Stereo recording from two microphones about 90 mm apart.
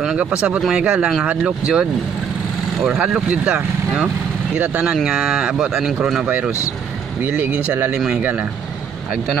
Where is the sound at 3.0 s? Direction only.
10° right (ahead or behind).